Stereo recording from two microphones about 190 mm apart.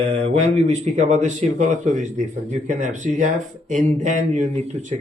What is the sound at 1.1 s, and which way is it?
Speech, 40° right (ahead or behind).